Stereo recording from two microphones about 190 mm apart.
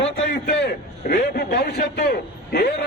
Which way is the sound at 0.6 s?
55° left (ahead or behind).